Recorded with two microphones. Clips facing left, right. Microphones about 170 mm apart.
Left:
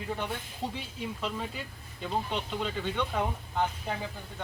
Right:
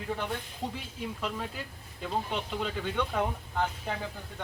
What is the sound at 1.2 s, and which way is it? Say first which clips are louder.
Speech: even; centre (ahead or behind).